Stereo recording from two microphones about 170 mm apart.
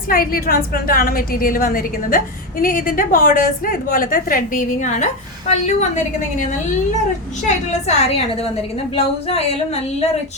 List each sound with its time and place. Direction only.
0.1 s a woman's voice: 60° left (ahead or behind); by 8.2 s 40° left (ahead or behind)